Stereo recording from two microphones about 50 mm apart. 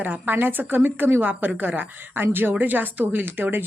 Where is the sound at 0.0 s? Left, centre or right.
Right.